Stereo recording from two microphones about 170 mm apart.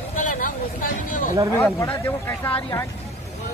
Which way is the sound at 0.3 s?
50° left (ahead or behind).